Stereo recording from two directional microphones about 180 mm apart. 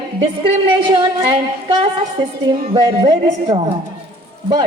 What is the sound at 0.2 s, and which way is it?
Speech, 30° right (ahead or behind).